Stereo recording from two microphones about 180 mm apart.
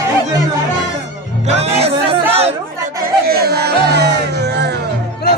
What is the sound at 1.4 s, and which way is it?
Music, 35° right (ahead or behind).